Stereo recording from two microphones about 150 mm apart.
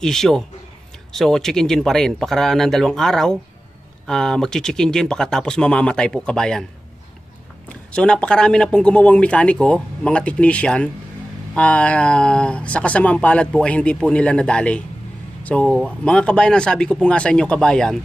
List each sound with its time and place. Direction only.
0.0 s speech: 5° left (ahead or behind)
7.9 s speech: 5° left (ahead or behind)